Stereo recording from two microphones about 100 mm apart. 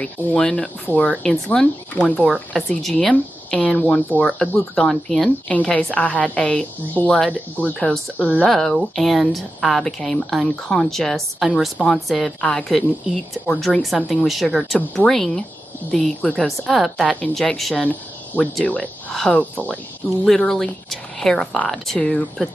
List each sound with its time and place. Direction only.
0.0 s a woman's voice: 10° left (ahead or behind)
8.5 s a woman's voice: 5° left (ahead or behind)
17.8 s speech: 15° left (ahead or behind)
19.1 s a woman's voice: 5° left (ahead or behind)
19.5 s a woman's voice: 15° left (ahead or behind)